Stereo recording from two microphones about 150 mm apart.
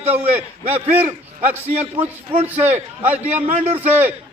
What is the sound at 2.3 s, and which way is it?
Speech, 40° right (ahead or behind).